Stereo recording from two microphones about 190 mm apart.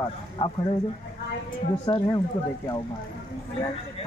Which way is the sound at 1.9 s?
25° left (ahead or behind).